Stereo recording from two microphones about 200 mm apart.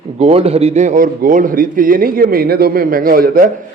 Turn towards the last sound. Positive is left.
turn(degrees=-45)  # may be behind; listen again after turning